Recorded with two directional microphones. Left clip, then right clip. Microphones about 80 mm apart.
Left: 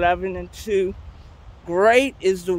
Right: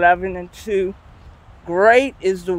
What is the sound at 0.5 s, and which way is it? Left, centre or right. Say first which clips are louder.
Speech: right 1 dB; centre.